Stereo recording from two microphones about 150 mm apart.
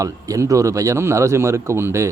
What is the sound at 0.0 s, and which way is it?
Speech, 20° right (ahead or behind).